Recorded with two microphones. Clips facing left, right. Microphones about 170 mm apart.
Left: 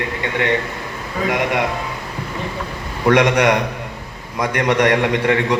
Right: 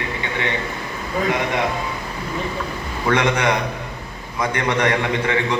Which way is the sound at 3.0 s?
75° left (ahead or behind).